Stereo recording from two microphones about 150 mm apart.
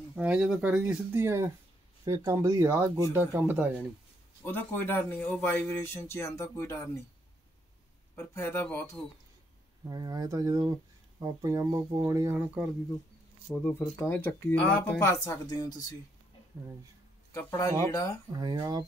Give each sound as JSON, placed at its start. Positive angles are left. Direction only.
{"t": 0.1, "sound": "speech", "side_deg": -5}
{"t": 1.1, "sound": "speech", "side_deg": -15}
{"t": 4.5, "sound": "speech", "side_deg": 15}
{"t": 8.2, "sound": "speech", "side_deg": 15}
{"t": 9.8, "sound": "speech", "side_deg": -25}
{"t": 12.6, "sound": "speech", "side_deg": -5}
{"t": 13.5, "sound": "speech", "side_deg": 5}
{"t": 17.3, "sound": "speech", "side_deg": 20}
{"t": 18.3, "sound": "speech", "side_deg": -25}